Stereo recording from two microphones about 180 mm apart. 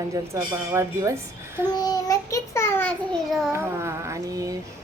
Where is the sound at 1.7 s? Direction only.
20° left (ahead or behind); by 3.5 s centre (ahead or behind).